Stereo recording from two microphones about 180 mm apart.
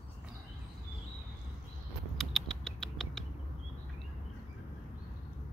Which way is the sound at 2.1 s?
Centre (ahead or behind).